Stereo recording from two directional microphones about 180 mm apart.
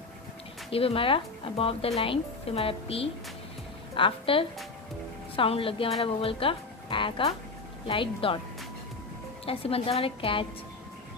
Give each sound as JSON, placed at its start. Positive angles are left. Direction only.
{"t": 0.7, "sound": "speech", "side_deg": 30}
{"t": 9.5, "sound": "speech", "side_deg": 30}